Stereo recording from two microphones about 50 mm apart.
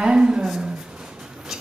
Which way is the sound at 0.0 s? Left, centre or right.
Centre.